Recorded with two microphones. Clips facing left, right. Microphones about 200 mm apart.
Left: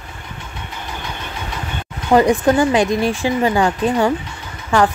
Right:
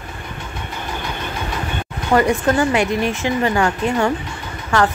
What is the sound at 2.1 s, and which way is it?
Speech, 15° left (ahead or behind).